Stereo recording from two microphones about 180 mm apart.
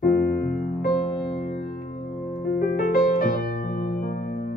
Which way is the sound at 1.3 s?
40° left (ahead or behind).